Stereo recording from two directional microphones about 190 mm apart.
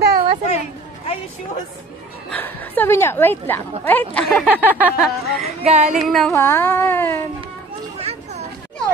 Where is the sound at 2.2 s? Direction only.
10° left (ahead or behind).